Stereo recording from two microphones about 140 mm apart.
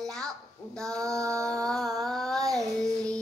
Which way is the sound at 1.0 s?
20° right (ahead or behind).